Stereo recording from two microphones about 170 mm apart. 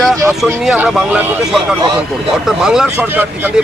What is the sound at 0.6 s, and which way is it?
Speech, centre (ahead or behind).